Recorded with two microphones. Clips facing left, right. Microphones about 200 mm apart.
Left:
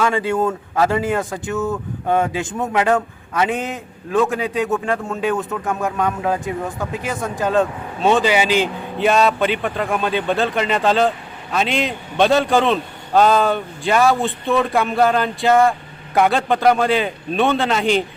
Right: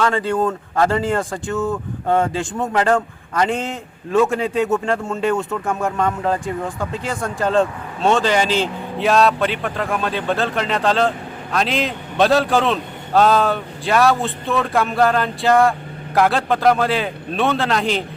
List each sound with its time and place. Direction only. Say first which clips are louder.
0.0 s a man's voice: even; 10° left (ahead or behind)
9.0 s a man's voice: even; centre (ahead or behind)